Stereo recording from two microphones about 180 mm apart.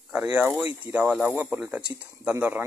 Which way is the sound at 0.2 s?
10° right (ahead or behind).